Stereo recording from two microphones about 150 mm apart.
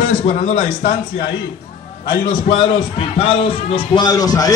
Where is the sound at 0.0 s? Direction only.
40° left (ahead or behind).